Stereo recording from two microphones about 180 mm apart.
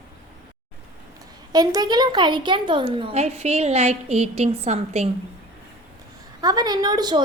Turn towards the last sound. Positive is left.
turn(degrees=-20)  # may be behind; listen again after turning